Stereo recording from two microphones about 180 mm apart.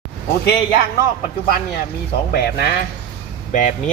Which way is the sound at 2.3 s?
60° left (ahead or behind).